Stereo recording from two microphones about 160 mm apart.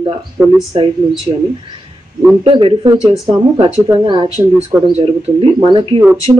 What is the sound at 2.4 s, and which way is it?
Speech, 35° right (ahead or behind).